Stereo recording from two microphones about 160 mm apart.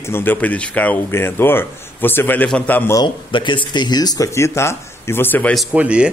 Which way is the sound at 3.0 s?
30° left (ahead or behind).